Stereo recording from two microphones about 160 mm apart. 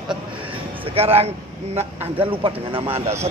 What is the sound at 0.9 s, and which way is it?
Speech, 40° right (ahead or behind).